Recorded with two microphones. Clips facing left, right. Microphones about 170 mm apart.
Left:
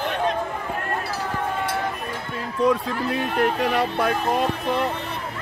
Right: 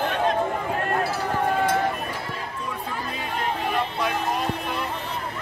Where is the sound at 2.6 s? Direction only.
75° left (ahead or behind).